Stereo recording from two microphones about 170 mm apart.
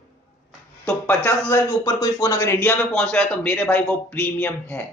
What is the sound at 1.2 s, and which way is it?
Speech, 15° left (ahead or behind).